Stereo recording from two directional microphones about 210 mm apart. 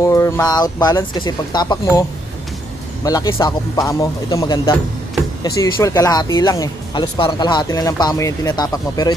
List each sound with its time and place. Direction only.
0.0 s speech: 15° left (ahead or behind)